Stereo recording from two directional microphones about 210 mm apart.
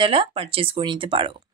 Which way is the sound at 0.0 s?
25° right (ahead or behind).